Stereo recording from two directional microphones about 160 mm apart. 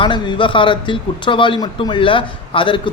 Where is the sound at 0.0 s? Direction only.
30° left (ahead or behind).